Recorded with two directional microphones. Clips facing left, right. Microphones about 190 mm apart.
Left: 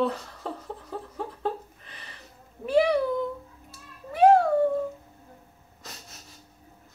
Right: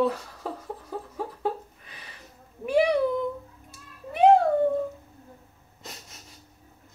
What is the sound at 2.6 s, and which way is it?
Cat, 15° right (ahead or behind).